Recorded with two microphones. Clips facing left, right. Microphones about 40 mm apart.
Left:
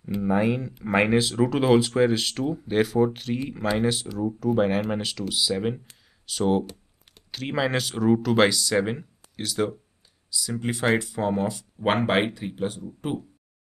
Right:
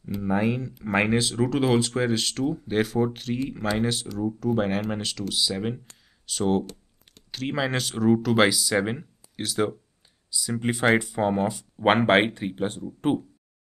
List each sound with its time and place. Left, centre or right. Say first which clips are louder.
0.0 s speech: left 2 dB; centre